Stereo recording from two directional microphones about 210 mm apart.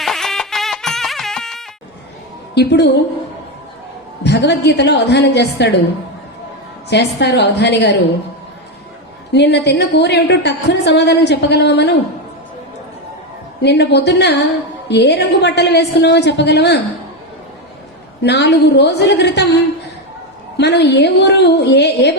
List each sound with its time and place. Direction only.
0.0 s music: centre (ahead or behind)
2.6 s a woman's voice: 55° left (ahead or behind)
4.2 s a woman's voice: 55° left (ahead or behind)
6.9 s a woman's voice: 55° left (ahead or behind)
9.3 s a woman's voice: 55° left (ahead or behind)
13.6 s a woman's voice: 55° left (ahead or behind)
18.2 s a woman's voice: 55° left (ahead or behind)
20.6 s a woman's voice: 55° left (ahead or behind)